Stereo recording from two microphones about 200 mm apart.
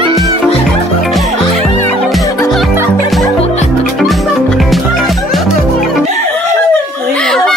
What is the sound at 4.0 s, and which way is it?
Music, centre (ahead or behind).